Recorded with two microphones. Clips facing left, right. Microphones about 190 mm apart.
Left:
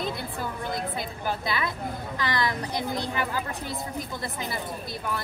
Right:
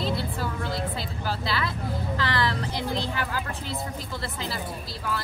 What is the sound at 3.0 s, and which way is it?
Speech, 20° left (ahead or behind).